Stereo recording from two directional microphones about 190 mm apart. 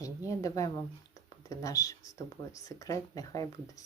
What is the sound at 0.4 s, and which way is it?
Speech, 20° left (ahead or behind).